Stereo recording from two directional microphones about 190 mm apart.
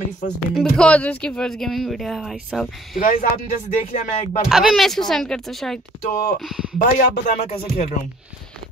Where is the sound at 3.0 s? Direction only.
45° left (ahead or behind).